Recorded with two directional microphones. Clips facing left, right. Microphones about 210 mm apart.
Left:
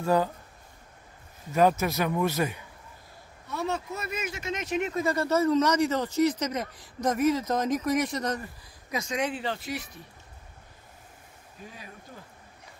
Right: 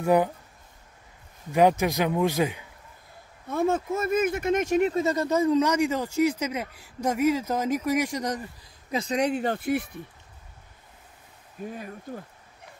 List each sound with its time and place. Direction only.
0.0 s speech: 15° right (ahead or behind)
1.5 s speech: 15° right (ahead or behind)
3.4 s speech: 50° right (ahead or behind)
4.9 s speech: 20° right (ahead or behind)
8.9 s speech: 35° right (ahead or behind); by 9.8 s 55° right (ahead or behind)
11.6 s speech: 50° right (ahead or behind)